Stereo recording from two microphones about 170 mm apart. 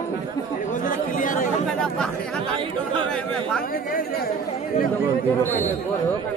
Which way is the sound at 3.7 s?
55° left (ahead or behind).